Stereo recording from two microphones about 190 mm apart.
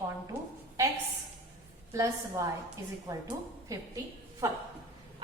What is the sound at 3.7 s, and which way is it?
Speech, 20° right (ahead or behind).